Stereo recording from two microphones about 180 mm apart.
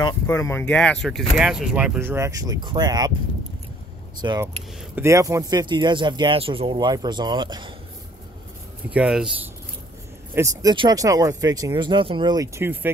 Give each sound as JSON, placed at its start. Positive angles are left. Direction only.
{"t": 0.3, "sound": "speech", "side_deg": 15}
{"t": 4.2, "sound": "speech", "side_deg": -25}
{"t": 8.9, "sound": "speech", "side_deg": -5}
{"t": 10.3, "sound": "speech", "side_deg": -15}